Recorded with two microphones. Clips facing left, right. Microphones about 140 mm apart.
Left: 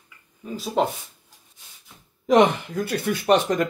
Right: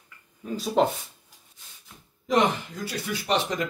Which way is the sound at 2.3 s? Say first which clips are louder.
Left 6 dB; 55° left (ahead or behind).